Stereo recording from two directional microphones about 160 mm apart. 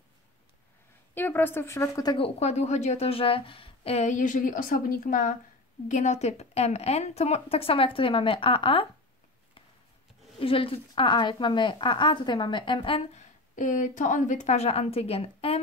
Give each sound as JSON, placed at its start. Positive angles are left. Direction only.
{"t": 1.1, "sound": "a woman's voice", "side_deg": 10}
{"t": 2.1, "sound": "a woman's voice", "side_deg": 40}
{"t": 10.4, "sound": "speech", "side_deg": 35}
{"t": 13.6, "sound": "a woman's voice", "side_deg": 50}